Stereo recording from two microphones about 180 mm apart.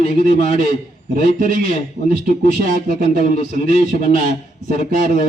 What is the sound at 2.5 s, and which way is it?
Speech, 50° right (ahead or behind).